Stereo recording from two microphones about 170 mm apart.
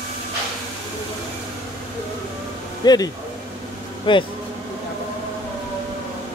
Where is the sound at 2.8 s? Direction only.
20° left (ahead or behind).